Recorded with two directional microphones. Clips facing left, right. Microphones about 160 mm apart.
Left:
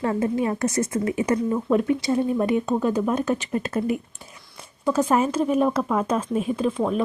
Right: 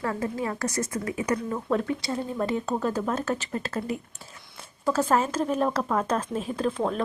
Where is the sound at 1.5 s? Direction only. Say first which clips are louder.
Left 6 dB; 15° left (ahead or behind).